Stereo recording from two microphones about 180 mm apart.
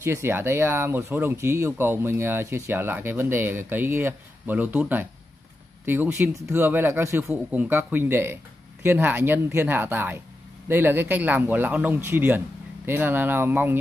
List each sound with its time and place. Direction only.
0.0 s speech: 15° right (ahead or behind)